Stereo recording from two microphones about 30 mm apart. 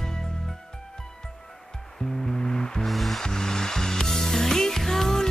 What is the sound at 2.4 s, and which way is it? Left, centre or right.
Music, centre.